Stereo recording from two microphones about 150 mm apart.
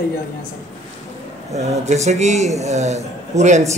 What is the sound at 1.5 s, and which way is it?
Speech, 50° right (ahead or behind).